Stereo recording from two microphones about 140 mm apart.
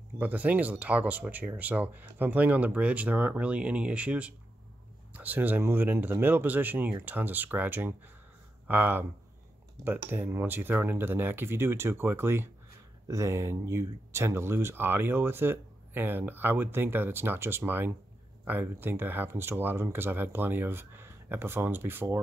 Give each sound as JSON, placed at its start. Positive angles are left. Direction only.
{"t": 0.2, "sound": "speech", "side_deg": -10}